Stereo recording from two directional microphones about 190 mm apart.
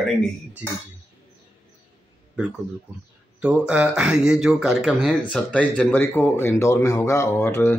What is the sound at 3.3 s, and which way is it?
Speech, 5° right (ahead or behind).